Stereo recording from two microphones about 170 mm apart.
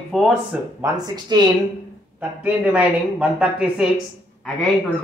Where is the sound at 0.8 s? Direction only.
25° right (ahead or behind).